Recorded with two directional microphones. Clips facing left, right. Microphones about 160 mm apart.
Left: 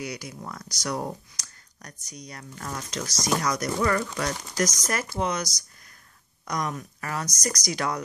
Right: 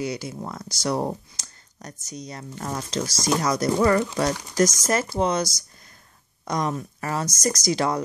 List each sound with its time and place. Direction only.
0.0 s speech: 25° right (ahead or behind)